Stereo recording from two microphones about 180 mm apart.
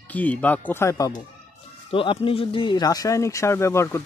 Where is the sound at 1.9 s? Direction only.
30° left (ahead or behind).